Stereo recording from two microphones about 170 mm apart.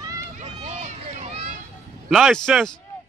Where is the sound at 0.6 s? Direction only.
40° right (ahead or behind).